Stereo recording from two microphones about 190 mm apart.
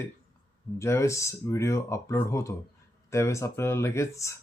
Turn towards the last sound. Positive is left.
turn(degrees=15)  # may be behind; listen again after turning